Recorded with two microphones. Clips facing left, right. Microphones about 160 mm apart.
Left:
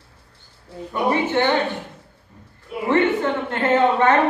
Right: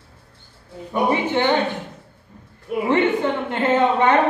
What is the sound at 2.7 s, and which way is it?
Speech, 55° right (ahead or behind).